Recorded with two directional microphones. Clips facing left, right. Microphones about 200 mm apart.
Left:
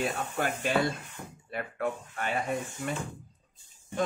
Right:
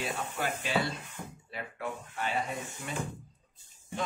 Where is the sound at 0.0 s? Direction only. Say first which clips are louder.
Left 4 dB; 50° left (ahead or behind).